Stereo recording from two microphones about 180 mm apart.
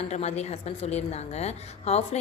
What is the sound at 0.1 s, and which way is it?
A woman's voice, 35° left (ahead or behind).